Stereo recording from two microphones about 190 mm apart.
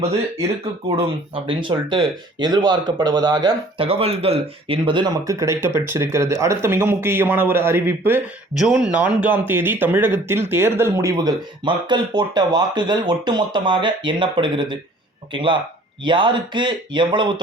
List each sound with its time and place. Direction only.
0.0 s speech: 30° right (ahead or behind)